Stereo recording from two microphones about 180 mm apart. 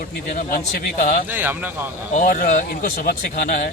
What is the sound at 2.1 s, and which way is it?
Speech, 50° left (ahead or behind).